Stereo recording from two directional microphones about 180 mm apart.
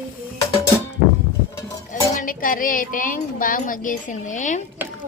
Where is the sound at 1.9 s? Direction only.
50° left (ahead or behind).